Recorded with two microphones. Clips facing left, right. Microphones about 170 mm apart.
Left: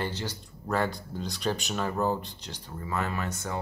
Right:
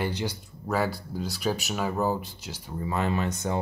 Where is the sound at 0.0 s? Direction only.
10° right (ahead or behind).